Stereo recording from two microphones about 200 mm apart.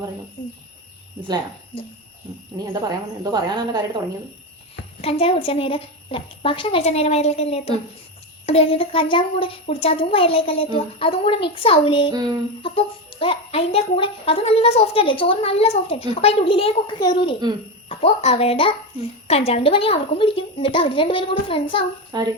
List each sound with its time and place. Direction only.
2.8 s a woman's voice: 20° right (ahead or behind)
4.9 s a child's voice: 30° left (ahead or behind)
22.1 s a woman's voice: 20° right (ahead or behind)